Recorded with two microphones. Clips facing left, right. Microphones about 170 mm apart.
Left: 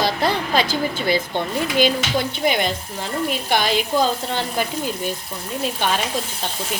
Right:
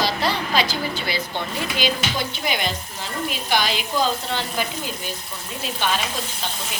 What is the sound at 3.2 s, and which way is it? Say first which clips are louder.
Speech: left 2 dB; 50° left (ahead or behind).